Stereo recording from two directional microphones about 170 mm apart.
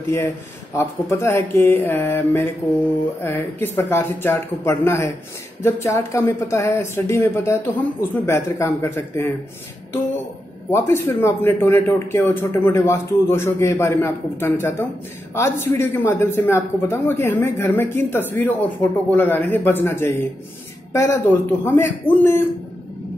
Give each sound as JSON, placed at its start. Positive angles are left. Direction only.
{"t": 0.7, "sound": "speech", "side_deg": 15}
{"t": 10.7, "sound": "speech", "side_deg": 15}